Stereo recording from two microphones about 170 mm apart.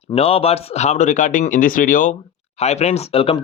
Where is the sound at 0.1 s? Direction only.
35° left (ahead or behind); by 2.1 s 50° left (ahead or behind).